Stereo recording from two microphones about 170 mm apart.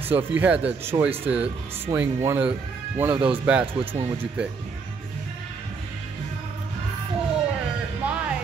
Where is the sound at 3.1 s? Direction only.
30° right (ahead or behind).